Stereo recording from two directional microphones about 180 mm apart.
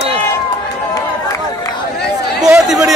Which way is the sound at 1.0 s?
20° left (ahead or behind).